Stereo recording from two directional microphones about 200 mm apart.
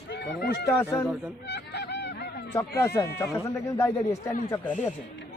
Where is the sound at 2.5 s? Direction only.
10° left (ahead or behind).